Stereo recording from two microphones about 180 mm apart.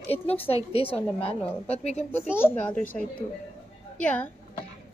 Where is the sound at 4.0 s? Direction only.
5° left (ahead or behind).